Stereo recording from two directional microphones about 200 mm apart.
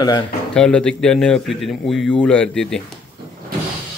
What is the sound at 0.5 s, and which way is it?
A man's voice, 5° left (ahead or behind).